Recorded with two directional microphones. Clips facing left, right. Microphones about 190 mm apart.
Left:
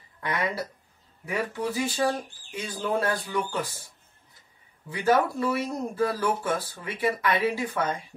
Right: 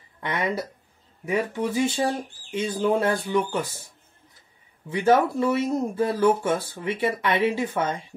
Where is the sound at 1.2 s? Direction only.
25° right (ahead or behind).